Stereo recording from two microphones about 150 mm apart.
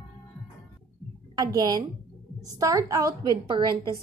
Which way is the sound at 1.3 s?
25° right (ahead or behind).